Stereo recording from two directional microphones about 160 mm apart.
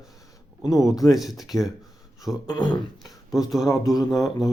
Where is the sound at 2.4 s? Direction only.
25° left (ahead or behind).